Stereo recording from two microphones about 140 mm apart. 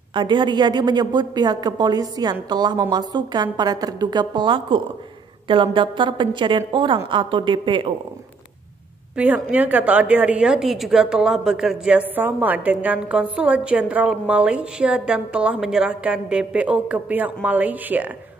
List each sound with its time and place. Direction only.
0.1 s a woman's voice: 35° right (ahead or behind)
9.1 s a woman's voice: 10° right (ahead or behind)